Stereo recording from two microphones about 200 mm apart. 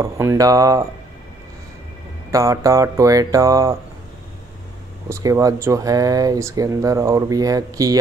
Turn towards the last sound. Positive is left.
turn(degrees=-15)  # may be behind; listen again after turning